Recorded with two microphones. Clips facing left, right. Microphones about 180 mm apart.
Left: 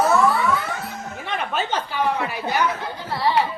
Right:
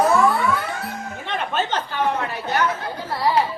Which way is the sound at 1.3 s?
10° left (ahead or behind).